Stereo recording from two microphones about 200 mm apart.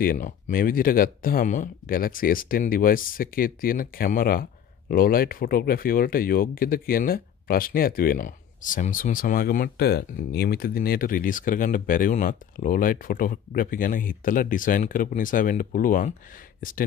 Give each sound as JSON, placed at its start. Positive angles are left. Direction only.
{"t": 0.0, "sound": "speech", "side_deg": 45}